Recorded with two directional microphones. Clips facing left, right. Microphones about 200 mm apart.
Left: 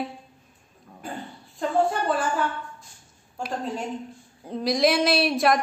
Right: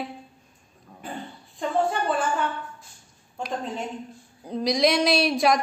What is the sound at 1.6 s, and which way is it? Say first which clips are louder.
A woman's voice: left 1 dB; centre (ahead or behind).